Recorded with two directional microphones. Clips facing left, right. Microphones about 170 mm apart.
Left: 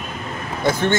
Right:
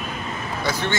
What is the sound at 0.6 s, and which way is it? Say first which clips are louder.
Speech: left 7 dB; 50° left (ahead or behind).